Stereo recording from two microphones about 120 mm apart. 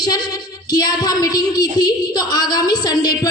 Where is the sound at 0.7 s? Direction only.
35° left (ahead or behind).